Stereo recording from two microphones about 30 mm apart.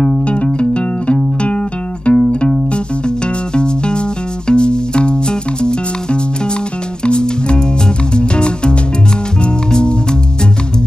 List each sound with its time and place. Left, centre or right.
0.0 s music: left
3.5 s music: left